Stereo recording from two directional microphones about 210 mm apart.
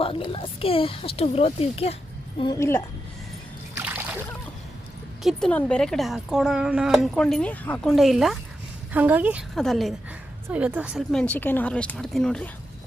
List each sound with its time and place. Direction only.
0.0 s speech: 25° left (ahead or behind)
2.4 s a woman's voice: 15° left (ahead or behind)
3.8 s splash: 10° right (ahead or behind)
5.2 s a woman's voice: 5° left (ahead or behind)